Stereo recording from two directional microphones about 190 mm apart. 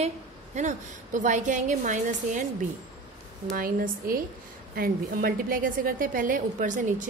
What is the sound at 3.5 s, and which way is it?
A woman's voice, 50° right (ahead or behind).